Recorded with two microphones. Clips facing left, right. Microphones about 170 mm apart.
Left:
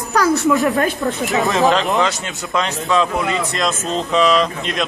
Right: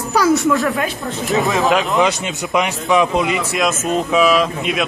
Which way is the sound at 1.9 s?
20° right (ahead or behind).